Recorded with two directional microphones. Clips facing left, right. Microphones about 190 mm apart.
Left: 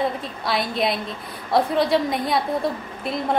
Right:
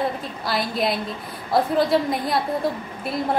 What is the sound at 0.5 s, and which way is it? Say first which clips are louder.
A woman's voice: left 1 dB; centre (ahead or behind).